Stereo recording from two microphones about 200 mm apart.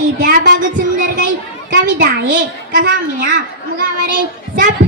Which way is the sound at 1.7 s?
60° right (ahead or behind).